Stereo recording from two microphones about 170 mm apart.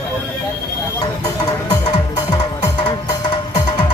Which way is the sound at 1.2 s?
25° left (ahead or behind).